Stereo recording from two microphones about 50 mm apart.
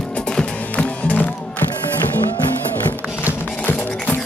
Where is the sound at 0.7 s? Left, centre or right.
Left.